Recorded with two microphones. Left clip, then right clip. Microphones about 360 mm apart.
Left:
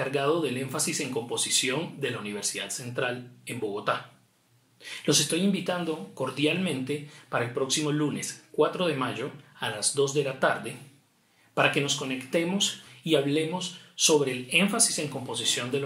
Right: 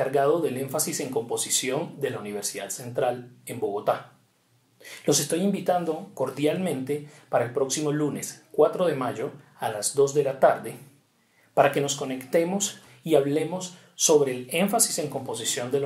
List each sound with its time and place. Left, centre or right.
0.0 s speech: centre